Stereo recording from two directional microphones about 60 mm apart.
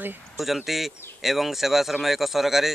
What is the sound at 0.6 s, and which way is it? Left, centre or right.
Speech, centre.